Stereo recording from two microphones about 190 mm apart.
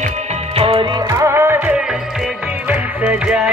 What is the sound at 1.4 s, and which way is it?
Music, 10° right (ahead or behind).